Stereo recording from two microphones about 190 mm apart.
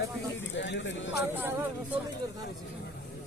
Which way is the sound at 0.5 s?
70° left (ahead or behind).